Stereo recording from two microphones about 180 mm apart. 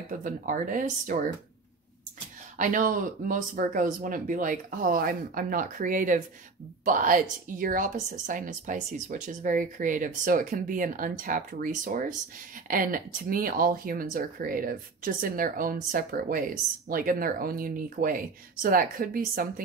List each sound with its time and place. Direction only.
0.1 s a woman's voice: 50° right (ahead or behind)
2.5 s a woman's voice: 45° right (ahead or behind)